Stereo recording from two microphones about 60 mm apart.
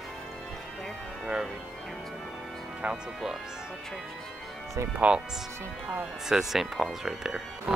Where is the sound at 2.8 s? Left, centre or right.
Centre.